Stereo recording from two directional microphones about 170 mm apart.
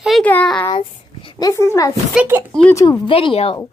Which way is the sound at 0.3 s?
10° left (ahead or behind).